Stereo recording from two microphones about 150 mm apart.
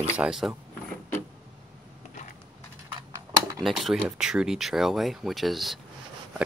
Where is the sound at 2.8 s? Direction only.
20° right (ahead or behind).